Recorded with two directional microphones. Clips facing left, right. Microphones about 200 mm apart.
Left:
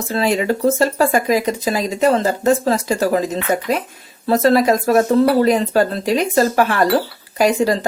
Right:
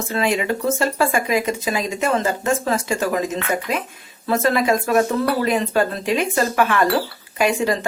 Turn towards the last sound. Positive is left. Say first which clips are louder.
# left 4 dB
turn(degrees=35)  # may be behind; listen again after turning